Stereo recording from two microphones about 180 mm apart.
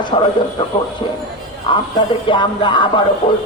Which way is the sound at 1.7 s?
25° left (ahead or behind).